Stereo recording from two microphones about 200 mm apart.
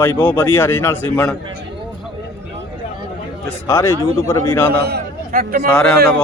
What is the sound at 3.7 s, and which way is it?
A man's voice, 15° left (ahead or behind).